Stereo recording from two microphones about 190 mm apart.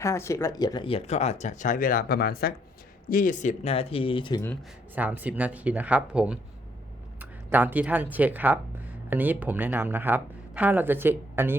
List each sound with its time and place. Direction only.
0.0 s speech: 15° left (ahead or behind)
4.9 s speech: 10° right (ahead or behind)